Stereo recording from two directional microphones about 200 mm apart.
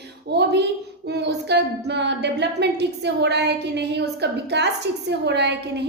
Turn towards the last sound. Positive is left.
turn(degrees=-60)  # may be behind; listen again after turning